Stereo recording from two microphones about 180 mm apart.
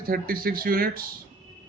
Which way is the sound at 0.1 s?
55° right (ahead or behind).